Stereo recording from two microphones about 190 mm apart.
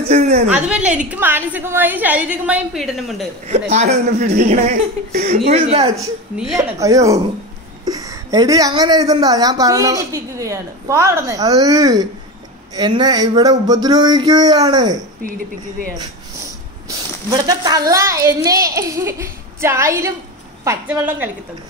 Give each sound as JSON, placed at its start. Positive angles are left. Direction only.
{"t": 0.1, "sound": "speech", "side_deg": -35}
{"t": 0.5, "sound": "a child's voice", "side_deg": -5}
{"t": 3.4, "sound": "speech", "side_deg": -35}
{"t": 5.9, "sound": "a child's voice", "side_deg": -15}
{"t": 17.3, "sound": "a child's voice", "side_deg": -20}